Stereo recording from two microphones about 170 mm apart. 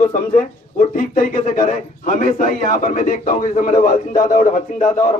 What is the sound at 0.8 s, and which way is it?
A man's voice, 50° left (ahead or behind).